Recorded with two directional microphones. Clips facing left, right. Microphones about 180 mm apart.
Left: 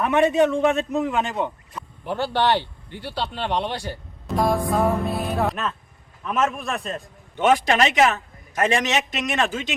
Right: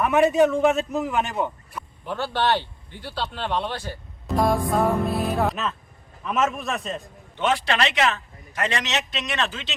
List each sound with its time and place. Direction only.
0.0 s music: 5° right (ahead or behind)
2.0 s speech: 15° left (ahead or behind)
4.4 s music: centre (ahead or behind)
7.3 s a man's voice: 45° left (ahead or behind)